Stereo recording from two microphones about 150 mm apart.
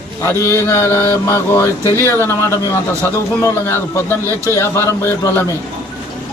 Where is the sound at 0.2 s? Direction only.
15° left (ahead or behind).